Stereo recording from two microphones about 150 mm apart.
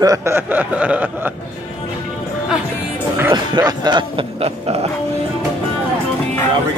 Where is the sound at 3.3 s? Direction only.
30° right (ahead or behind).